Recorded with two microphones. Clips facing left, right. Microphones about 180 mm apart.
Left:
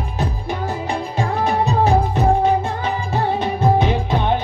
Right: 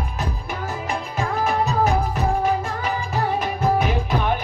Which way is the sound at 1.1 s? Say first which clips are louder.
Left 2 dB; 30° left (ahead or behind).